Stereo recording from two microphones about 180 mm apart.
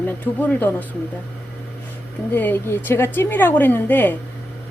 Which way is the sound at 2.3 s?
10° left (ahead or behind).